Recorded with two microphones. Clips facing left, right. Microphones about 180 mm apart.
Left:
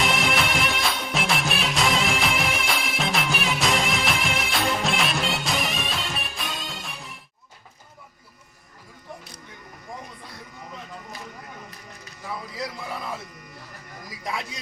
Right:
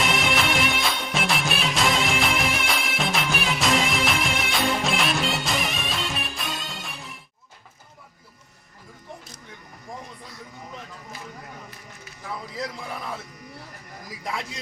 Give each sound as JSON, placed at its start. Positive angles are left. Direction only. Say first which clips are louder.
{"t": 0.0, "sound": "music", "louder": "even", "side_deg": 0}